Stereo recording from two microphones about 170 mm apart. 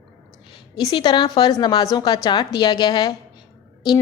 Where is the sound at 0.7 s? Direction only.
25° left (ahead or behind).